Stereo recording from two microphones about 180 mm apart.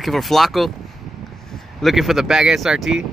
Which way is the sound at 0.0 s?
Centre (ahead or behind).